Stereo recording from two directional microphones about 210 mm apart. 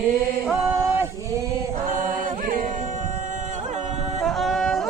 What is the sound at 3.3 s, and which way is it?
Music, 35° right (ahead or behind).